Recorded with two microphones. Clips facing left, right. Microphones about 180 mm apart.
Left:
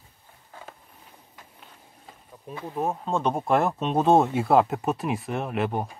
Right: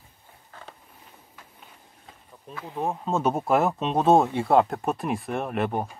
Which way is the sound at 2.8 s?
Centre (ahead or behind).